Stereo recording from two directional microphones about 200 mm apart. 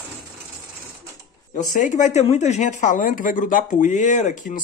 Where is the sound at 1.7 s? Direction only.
40° left (ahead or behind).